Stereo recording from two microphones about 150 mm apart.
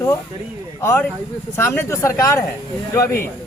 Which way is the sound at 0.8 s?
15° left (ahead or behind).